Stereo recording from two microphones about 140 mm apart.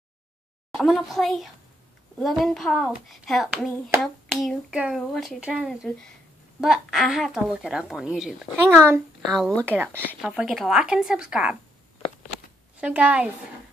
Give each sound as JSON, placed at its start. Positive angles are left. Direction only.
{"t": 0.8, "sound": "speech", "side_deg": 0}
{"t": 8.6, "sound": "a woman's voice", "side_deg": -20}
{"t": 9.3, "sound": "speech", "side_deg": 5}
{"t": 9.7, "sound": "a woman's voice", "side_deg": -15}
{"t": 10.2, "sound": "speech", "side_deg": -5}
{"t": 12.8, "sound": "a woman's voice", "side_deg": -10}